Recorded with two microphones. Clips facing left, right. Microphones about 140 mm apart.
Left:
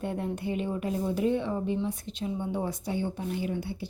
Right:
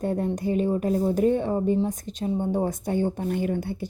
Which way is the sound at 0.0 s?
40° right (ahead or behind).